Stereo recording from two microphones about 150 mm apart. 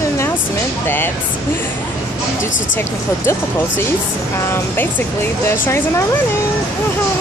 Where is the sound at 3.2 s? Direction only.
15° left (ahead or behind).